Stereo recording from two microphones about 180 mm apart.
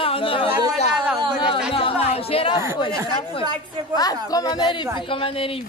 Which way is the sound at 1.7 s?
30° left (ahead or behind).